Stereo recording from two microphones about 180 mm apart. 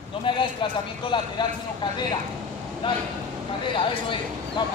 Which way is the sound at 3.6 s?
25° left (ahead or behind).